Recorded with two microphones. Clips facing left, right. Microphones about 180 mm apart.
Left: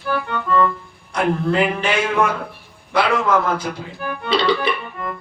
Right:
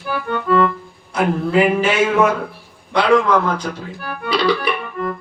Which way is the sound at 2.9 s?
5° left (ahead or behind).